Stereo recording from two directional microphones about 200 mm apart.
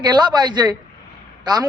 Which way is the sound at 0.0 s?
20° right (ahead or behind).